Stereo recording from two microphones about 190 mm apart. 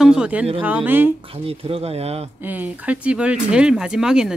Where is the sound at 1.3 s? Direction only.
30° right (ahead or behind).